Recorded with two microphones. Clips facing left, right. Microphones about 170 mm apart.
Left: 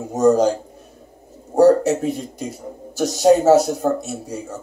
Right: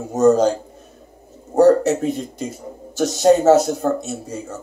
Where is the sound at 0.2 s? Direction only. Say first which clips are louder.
Right 1 dB; 15° left (ahead or behind).